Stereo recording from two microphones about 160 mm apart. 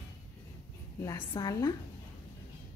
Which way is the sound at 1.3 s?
25° left (ahead or behind).